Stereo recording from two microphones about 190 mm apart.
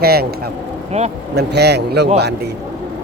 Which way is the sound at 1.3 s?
60° right (ahead or behind).